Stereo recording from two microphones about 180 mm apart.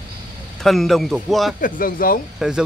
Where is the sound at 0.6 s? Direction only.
Centre (ahead or behind).